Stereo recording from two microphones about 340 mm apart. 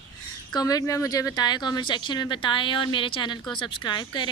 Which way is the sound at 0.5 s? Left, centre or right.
Centre.